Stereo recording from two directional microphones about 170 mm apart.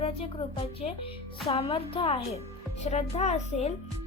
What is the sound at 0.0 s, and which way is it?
A child's voice, 35° left (ahead or behind).